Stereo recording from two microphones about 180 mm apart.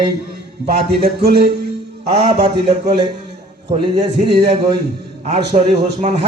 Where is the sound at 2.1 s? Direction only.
30° right (ahead or behind).